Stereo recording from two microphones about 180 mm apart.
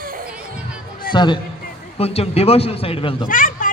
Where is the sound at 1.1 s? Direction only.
25° left (ahead or behind).